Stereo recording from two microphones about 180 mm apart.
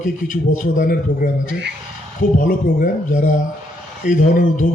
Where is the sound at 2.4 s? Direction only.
50° left (ahead or behind).